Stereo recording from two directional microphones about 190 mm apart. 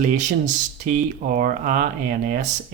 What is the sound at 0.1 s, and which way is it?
Speech, 40° right (ahead or behind).